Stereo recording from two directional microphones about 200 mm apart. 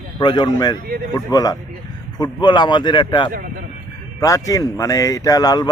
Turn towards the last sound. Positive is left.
turn(degrees=20)  # may be behind; listen again after turning